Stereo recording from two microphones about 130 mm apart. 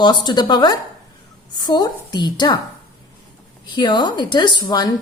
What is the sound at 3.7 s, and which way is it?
Speech, 35° left (ahead or behind).